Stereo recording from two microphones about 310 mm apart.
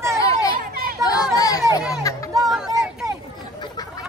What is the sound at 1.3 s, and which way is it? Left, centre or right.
Speech, centre.